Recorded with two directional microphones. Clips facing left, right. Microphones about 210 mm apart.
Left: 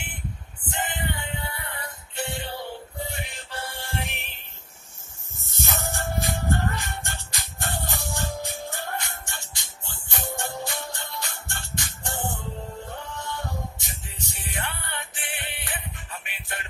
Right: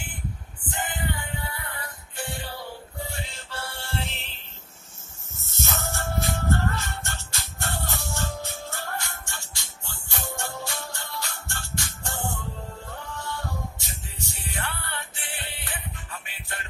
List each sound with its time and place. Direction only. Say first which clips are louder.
0.7 s music: even; 25° left (ahead or behind)